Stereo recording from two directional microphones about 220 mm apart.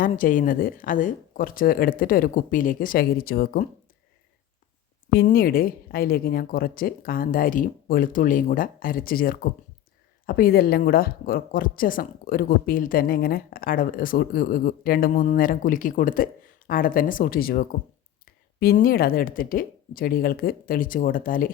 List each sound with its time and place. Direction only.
0.0 s speech: 35° left (ahead or behind)
5.1 s speech: 45° left (ahead or behind)